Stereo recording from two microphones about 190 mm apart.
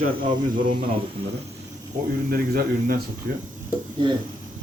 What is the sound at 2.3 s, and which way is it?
Speech, 50° right (ahead or behind).